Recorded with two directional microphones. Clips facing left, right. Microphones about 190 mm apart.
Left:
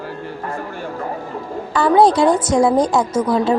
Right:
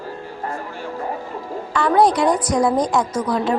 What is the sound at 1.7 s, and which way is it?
A woman's voice, 30° left (ahead or behind).